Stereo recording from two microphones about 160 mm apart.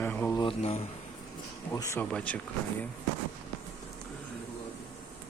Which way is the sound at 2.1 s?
10° left (ahead or behind).